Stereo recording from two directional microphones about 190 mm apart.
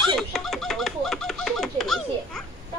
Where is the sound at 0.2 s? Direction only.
Centre (ahead or behind).